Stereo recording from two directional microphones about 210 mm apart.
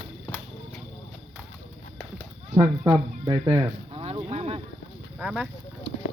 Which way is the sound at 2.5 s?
15° right (ahead or behind).